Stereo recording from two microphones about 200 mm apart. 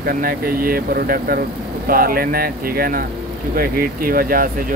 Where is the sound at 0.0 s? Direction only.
50° right (ahead or behind).